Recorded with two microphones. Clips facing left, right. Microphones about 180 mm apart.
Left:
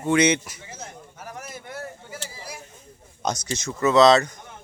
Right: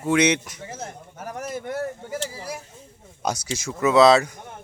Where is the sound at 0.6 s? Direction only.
50° right (ahead or behind).